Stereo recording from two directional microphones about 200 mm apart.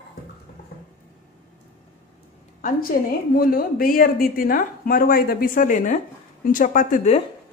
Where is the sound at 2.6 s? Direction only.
45° left (ahead or behind).